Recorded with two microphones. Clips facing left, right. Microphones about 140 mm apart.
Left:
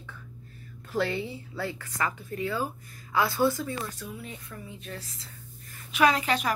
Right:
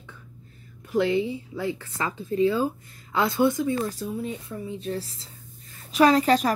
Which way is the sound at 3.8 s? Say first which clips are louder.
Right 8 dB; 35° right (ahead or behind).